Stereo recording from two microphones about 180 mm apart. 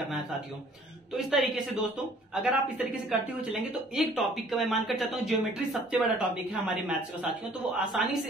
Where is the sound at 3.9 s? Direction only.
Centre (ahead or behind).